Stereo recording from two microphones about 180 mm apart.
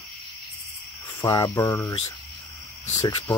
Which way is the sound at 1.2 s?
25° left (ahead or behind).